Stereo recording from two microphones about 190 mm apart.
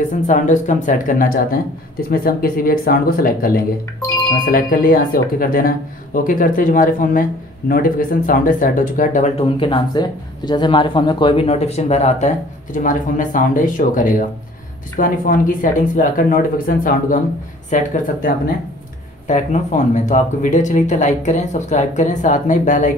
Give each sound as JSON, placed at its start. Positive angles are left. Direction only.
{"t": 0.3, "sound": "speech", "side_deg": 40}
{"t": 9.6, "sound": "speech", "side_deg": 25}